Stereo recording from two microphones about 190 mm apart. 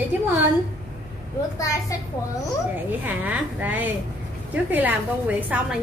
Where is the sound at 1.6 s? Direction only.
15° left (ahead or behind).